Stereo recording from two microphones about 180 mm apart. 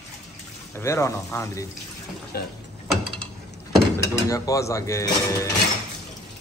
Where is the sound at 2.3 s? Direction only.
60° left (ahead or behind).